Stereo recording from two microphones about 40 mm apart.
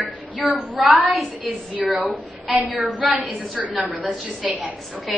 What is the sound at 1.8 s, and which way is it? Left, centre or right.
Speech, centre.